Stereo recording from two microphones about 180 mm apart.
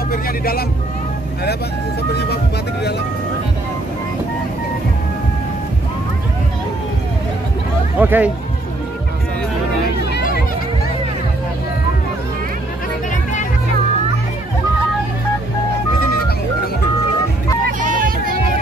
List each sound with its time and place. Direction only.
0.1 s speech: 55° left (ahead or behind)
8.0 s speech: 10° right (ahead or behind)
10.1 s music: 60° left (ahead or behind)
17.6 s a sound: 50° right (ahead or behind)